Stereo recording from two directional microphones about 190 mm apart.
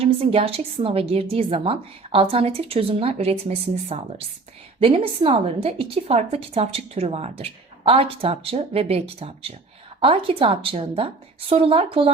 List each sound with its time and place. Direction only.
0.0 s a woman's voice: 30° right (ahead or behind)